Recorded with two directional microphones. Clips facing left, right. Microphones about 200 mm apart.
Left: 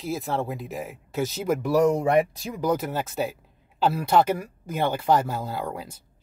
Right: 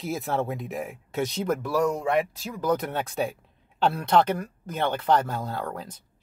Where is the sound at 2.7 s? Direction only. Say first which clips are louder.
Even; 5° left (ahead or behind).